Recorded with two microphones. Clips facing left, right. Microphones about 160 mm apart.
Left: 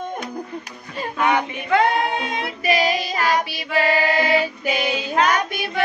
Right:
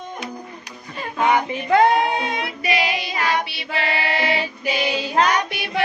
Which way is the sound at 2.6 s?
40° left (ahead or behind).